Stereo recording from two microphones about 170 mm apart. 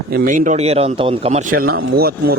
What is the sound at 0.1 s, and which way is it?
A man's voice, 55° right (ahead or behind).